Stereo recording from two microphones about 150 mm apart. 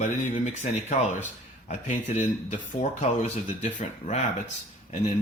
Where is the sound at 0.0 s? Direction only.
55° left (ahead or behind).